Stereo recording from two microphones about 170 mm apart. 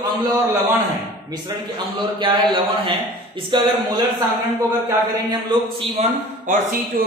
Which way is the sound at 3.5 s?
30° right (ahead or behind).